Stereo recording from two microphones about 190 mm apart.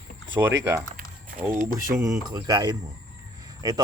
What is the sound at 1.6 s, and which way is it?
Speech, 45° right (ahead or behind).